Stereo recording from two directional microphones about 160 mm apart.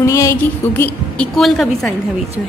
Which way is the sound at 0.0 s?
20° left (ahead or behind).